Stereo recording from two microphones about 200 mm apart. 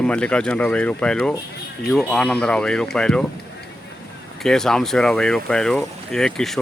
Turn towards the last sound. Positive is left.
turn(degrees=0)  # may be behind; listen again after turning